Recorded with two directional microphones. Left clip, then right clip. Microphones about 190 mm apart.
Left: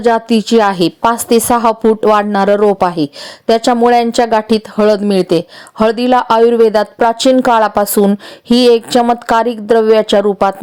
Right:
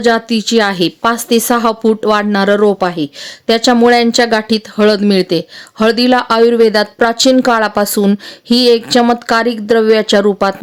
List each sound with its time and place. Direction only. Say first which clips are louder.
0.0 s a woman's voice: left 1 dB; 5° left (ahead or behind)
3.7 s a woman's voice: right 2 dB; 15° right (ahead or behind)
3.9 s a woman's voice: even; centre (ahead or behind)